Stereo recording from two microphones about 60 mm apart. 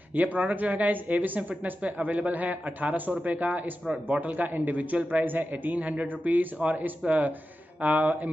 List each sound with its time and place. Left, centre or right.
0.1 s a man's voice: right